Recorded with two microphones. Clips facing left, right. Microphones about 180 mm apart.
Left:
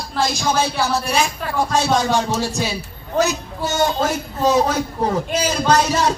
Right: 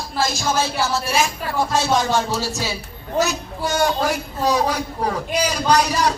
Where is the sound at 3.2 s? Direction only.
20° left (ahead or behind).